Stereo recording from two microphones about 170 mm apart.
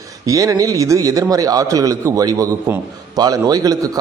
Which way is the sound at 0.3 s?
20° right (ahead or behind).